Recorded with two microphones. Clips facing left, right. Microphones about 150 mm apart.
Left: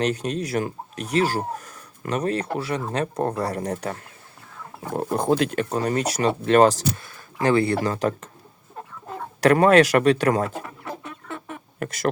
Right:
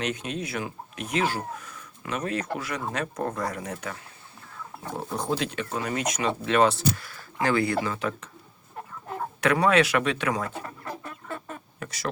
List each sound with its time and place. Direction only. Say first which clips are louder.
0.0 s speech: left 6 dB; 40° left (ahead or behind)
4.9 s speech: left 8 dB; 55° left (ahead or behind)
5.7 s speech: left 5 dB; 40° left (ahead or behind)
6.9 s speech: right 1 dB; 20° left (ahead or behind)
7.9 s speech: left 6 dB; 40° left (ahead or behind)
9.4 s speech: left 6 dB; 40° left (ahead or behind)
11.8 s speech: left 8 dB; 50° left (ahead or behind)